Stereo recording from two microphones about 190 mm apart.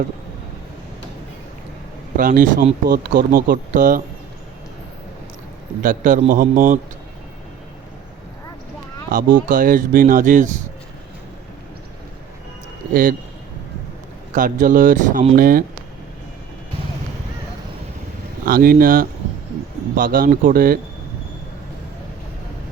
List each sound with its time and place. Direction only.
2.1 s speech: 45° right (ahead or behind)
5.8 s speech: 45° right (ahead or behind)
9.1 s speech: 45° right (ahead or behind)
12.9 s speech: 45° right (ahead or behind)
14.3 s speech: 45° right (ahead or behind)
15.4 s speech: 50° right (ahead or behind)
18.4 s speech: 50° right (ahead or behind)